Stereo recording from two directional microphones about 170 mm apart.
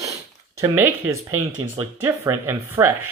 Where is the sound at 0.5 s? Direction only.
15° right (ahead or behind).